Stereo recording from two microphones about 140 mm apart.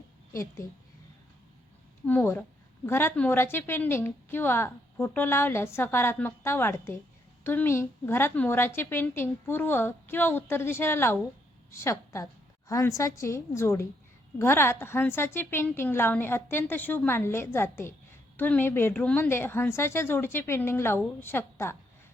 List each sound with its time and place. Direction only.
0.6 s a woman's voice: 20° left (ahead or behind)
2.0 s a woman's voice: 15° left (ahead or behind)